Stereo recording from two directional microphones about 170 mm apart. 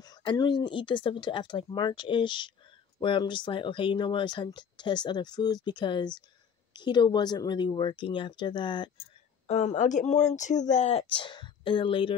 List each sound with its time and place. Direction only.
0.0 s speech: 25° left (ahead or behind)
9.5 s speech: 40° left (ahead or behind)